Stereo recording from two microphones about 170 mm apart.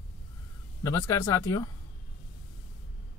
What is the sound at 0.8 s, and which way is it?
Speech, 15° left (ahead or behind).